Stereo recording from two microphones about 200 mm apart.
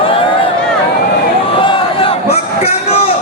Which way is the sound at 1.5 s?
25° left (ahead or behind).